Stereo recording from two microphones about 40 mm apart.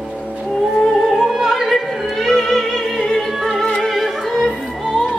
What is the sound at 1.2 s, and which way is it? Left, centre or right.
Opera, centre.